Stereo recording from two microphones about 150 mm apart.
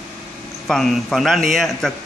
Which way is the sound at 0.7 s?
Centre (ahead or behind).